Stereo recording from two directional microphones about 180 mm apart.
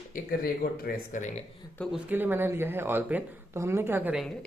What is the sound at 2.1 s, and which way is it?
Speech, 10° right (ahead or behind).